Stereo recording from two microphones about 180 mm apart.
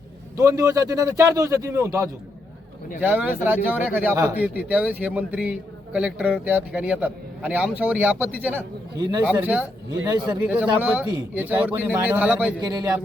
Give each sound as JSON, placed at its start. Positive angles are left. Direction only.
{"t": 0.3, "sound": "a man's voice", "side_deg": -20}
{"t": 9.0, "sound": "speech", "side_deg": -20}
{"t": 9.2, "sound": "a man's voice", "side_deg": -10}
{"t": 12.6, "sound": "speech", "side_deg": -20}